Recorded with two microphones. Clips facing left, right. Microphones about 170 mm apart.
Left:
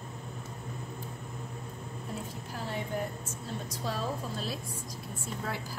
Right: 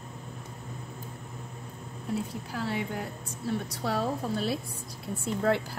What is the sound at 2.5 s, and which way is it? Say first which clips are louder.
Speech: right 3 dB; 70° right (ahead or behind).